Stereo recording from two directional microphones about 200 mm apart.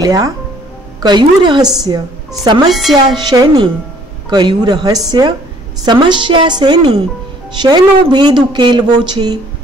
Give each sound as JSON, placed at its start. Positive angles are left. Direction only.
{"t": 0.0, "sound": "a woman's voice", "side_deg": -15}
{"t": 2.7, "sound": "speech", "side_deg": 0}
{"t": 3.2, "sound": "a woman's voice", "side_deg": -20}